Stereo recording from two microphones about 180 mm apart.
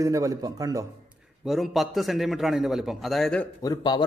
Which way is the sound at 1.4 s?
Centre (ahead or behind).